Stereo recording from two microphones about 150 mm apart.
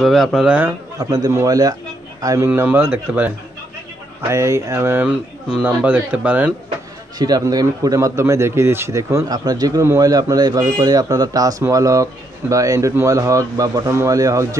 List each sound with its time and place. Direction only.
0.0 s speech: centre (ahead or behind)
0.9 s a man's voice: 25° right (ahead or behind)
7.2 s a man's voice: 25° right (ahead or behind)